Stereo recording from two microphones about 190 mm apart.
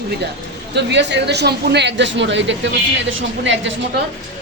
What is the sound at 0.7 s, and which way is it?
A woman's voice, 65° right (ahead or behind).